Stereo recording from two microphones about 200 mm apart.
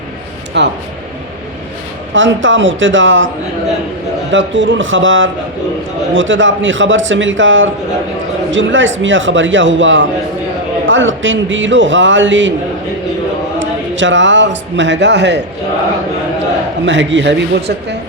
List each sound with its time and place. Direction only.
0.6 s a man's voice: 60° right (ahead or behind)
2.1 s a man's voice: 70° right (ahead or behind)
4.3 s a man's voice: 65° right (ahead or behind)
13.6 s speech: 70° right (ahead or behind)
16.8 s a man's voice: 65° right (ahead or behind)